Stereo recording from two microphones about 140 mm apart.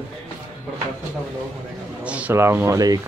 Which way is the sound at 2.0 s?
10° right (ahead or behind).